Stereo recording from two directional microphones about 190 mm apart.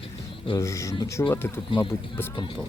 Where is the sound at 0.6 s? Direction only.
15° left (ahead or behind).